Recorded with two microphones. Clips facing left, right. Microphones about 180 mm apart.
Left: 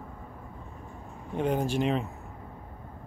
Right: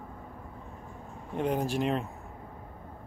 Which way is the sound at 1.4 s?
Centre (ahead or behind).